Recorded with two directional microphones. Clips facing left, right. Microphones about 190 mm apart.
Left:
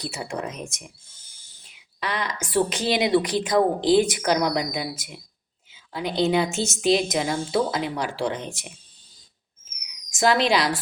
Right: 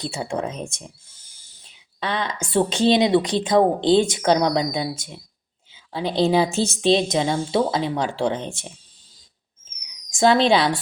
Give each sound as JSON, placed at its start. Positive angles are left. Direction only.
{"t": 0.0, "sound": "a woman's voice", "side_deg": -30}
{"t": 2.0, "sound": "a woman's voice", "side_deg": -25}
{"t": 10.1, "sound": "speech", "side_deg": -30}